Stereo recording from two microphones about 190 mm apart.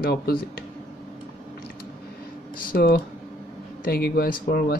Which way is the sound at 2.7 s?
55° left (ahead or behind).